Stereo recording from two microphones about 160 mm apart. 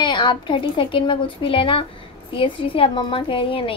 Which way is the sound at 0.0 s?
30° left (ahead or behind).